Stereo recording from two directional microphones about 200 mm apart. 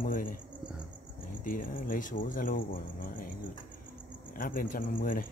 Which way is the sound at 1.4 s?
45° left (ahead or behind).